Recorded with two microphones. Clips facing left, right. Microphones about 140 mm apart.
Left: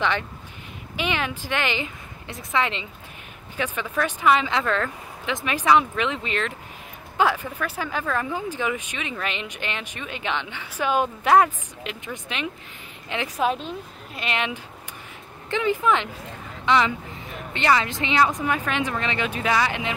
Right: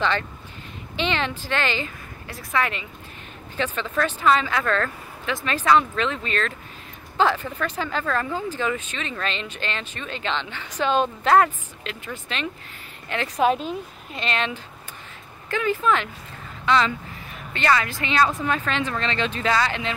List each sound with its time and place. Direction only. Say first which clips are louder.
0.9 s speech: right 1 dB; 10° left (ahead or behind)
3.5 s speech: right 1 dB; 10° left (ahead or behind)
13.4 s a woman's voice: right 4 dB; centre (ahead or behind)
14.2 s speech: right 1 dB; 15° left (ahead or behind)